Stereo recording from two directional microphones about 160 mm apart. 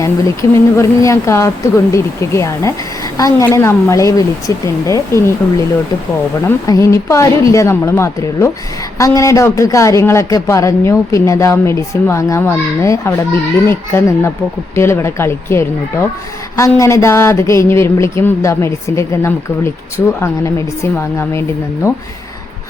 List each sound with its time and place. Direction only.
0.0 s speech: 20° left (ahead or behind)
6.7 s speech: 20° left (ahead or behind)